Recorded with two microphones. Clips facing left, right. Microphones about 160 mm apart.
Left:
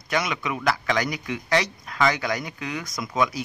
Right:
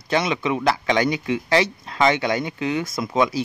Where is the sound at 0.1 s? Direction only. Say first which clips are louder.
Right 5 dB; 25° right (ahead or behind).